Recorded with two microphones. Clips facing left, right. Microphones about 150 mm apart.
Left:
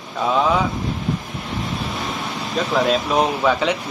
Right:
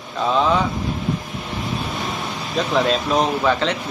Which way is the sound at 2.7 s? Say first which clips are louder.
Even; 5° left (ahead or behind).